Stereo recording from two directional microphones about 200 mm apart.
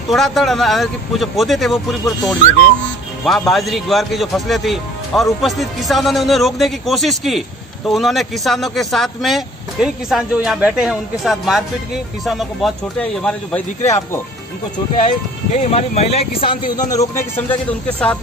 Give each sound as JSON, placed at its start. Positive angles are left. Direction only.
{"t": 0.1, "sound": "speech", "side_deg": 0}
{"t": 15.0, "sound": "speech", "side_deg": 30}
{"t": 16.9, "sound": "speech", "side_deg": 15}